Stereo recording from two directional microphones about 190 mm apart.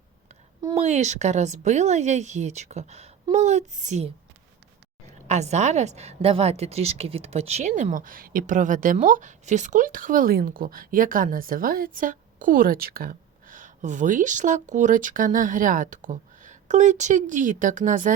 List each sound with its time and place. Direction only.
0.6 s speech: 35° right (ahead or behind)
5.3 s speech: 35° right (ahead or behind)